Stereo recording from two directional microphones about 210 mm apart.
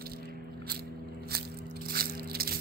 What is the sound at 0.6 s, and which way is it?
Biting, 50° right (ahead or behind).